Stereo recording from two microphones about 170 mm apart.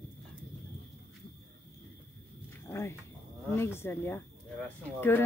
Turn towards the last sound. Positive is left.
turn(degrees=10)  # may be behind; listen again after turning